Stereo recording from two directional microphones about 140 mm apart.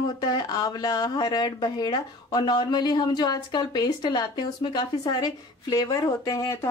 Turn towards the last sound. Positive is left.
turn(degrees=20)  # may be behind; listen again after turning